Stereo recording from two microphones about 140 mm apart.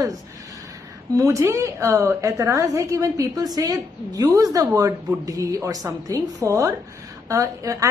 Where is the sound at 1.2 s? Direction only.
20° right (ahead or behind).